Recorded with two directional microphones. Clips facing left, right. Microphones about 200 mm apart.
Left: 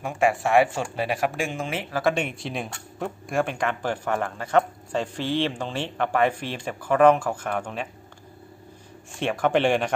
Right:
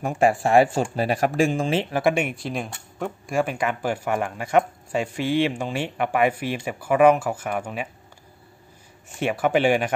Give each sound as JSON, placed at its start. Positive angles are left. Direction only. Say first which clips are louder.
{"t": 0.0, "sound": "speech", "louder": "right 3 dB", "side_deg": -35}
{"t": 2.0, "sound": "speech", "louder": "left 2 dB", "side_deg": -10}
{"t": 9.2, "sound": "speech", "louder": "right 1 dB", "side_deg": -5}